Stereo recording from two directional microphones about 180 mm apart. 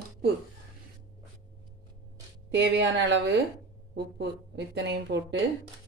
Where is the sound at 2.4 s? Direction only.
70° right (ahead or behind).